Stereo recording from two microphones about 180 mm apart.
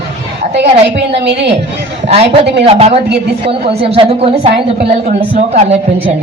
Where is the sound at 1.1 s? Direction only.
70° right (ahead or behind).